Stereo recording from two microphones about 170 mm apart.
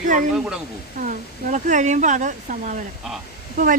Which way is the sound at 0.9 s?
50° right (ahead or behind).